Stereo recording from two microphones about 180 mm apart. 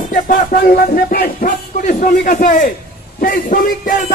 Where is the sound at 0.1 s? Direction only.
50° left (ahead or behind).